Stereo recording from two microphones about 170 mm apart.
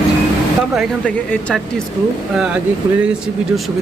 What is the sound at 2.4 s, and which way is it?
Speech, 5° right (ahead or behind).